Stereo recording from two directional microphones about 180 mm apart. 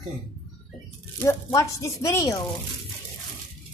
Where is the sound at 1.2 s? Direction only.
15° left (ahead or behind).